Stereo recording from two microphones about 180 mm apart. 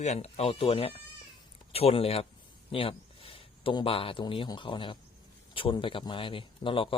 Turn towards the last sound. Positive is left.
turn(degrees=30)  # may be behind; listen again after turning